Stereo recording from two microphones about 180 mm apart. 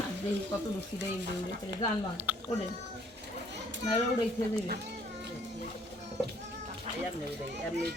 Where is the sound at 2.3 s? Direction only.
10° right (ahead or behind).